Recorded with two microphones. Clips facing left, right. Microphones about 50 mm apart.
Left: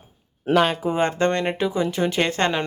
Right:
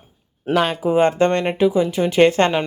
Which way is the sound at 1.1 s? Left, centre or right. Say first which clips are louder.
Right 4 dB; right.